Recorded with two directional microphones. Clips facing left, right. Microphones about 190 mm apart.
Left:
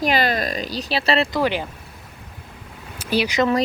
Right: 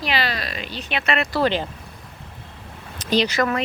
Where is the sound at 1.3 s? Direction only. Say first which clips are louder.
Even; 10° left (ahead or behind).